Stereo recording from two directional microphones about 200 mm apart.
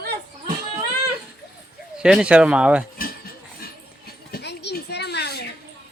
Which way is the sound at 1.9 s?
5° right (ahead or behind).